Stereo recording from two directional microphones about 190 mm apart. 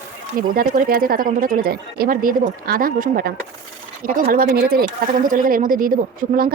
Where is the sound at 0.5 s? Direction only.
50° right (ahead or behind).